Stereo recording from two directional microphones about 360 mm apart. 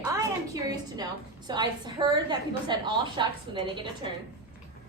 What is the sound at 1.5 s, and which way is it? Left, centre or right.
A woman's voice, centre.